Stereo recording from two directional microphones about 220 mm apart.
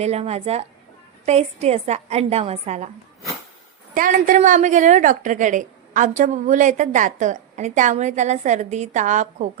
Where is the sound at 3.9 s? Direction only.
35° right (ahead or behind).